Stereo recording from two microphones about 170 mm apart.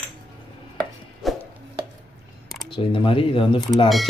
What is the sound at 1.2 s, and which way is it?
Chopping, centre (ahead or behind).